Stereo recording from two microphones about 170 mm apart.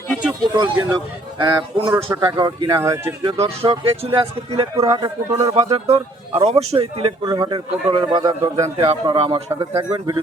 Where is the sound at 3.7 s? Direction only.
30° right (ahead or behind).